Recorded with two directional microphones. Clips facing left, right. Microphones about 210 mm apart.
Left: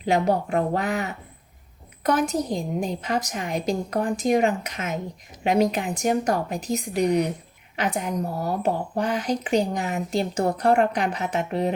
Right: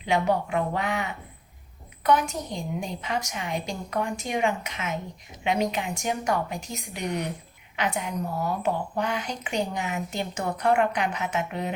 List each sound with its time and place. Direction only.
0.0 s a woman's voice: 40° left (ahead or behind)